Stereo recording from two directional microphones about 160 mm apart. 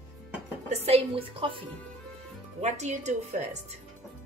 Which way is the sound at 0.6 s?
40° right (ahead or behind).